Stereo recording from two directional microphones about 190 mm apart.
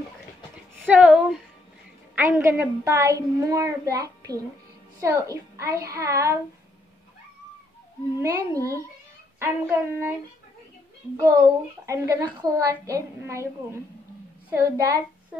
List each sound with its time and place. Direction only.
0.8 s a woman's voice: 5° right (ahead or behind)
8.2 s a woman's voice: 15° right (ahead or behind)
11.1 s a woman's voice: 15° right (ahead or behind)
14.5 s a woman's voice: 15° right (ahead or behind)